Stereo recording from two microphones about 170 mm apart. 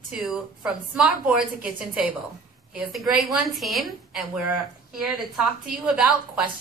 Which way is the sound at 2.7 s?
Centre (ahead or behind).